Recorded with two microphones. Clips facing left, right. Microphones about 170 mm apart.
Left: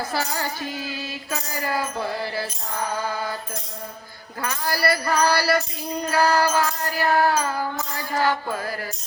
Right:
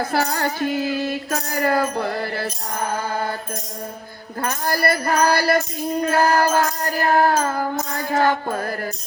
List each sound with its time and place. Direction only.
0.0 s music: 55° right (ahead or behind)
4.4 s music: 50° right (ahead or behind)